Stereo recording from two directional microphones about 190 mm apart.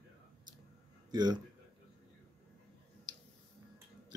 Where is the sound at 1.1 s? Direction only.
20° right (ahead or behind).